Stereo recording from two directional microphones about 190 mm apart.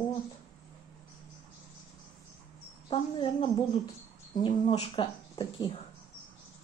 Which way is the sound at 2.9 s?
25° left (ahead or behind).